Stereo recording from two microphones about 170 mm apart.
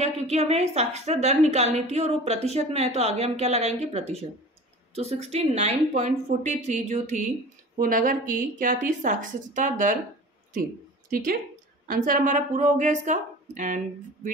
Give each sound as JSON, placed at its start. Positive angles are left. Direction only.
{"t": 0.0, "sound": "a woman's voice", "side_deg": -40}
{"t": 7.8, "sound": "a woman's voice", "side_deg": -55}
{"t": 11.1, "sound": "a woman's voice", "side_deg": -55}